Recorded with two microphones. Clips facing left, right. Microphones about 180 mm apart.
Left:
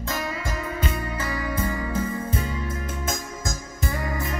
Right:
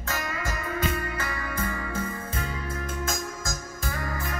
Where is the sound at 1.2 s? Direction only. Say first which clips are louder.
Left 4 dB; 15° left (ahead or behind).